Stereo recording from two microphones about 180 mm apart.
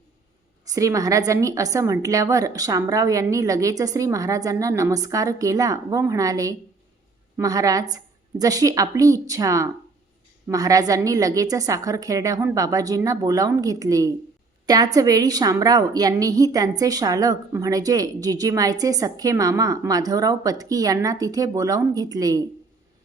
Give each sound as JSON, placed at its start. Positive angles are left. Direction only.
{"t": 0.6, "sound": "a woman's voice", "side_deg": -20}